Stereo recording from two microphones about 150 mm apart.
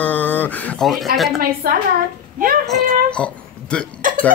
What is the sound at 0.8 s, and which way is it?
Speech, centre (ahead or behind).